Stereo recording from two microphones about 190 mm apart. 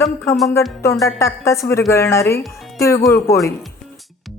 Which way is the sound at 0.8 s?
15° left (ahead or behind).